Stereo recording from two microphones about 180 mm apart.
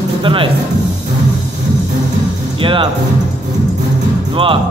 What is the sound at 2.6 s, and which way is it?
Speech, 30° right (ahead or behind).